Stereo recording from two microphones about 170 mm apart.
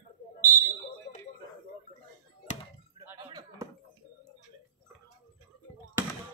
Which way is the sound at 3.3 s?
25° right (ahead or behind).